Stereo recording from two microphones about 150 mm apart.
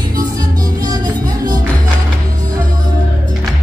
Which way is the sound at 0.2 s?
25° right (ahead or behind).